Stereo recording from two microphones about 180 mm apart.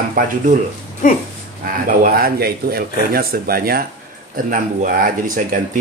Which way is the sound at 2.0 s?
55° right (ahead or behind).